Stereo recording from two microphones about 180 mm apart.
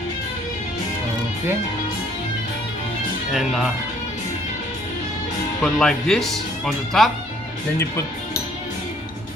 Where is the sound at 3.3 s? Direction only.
Centre (ahead or behind).